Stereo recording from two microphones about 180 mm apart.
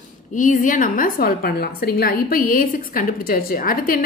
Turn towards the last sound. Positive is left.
turn(degrees=50)  # may be behind; listen again after turning